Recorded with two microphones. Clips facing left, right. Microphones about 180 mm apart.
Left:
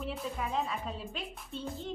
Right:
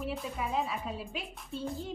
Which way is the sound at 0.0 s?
5° right (ahead or behind).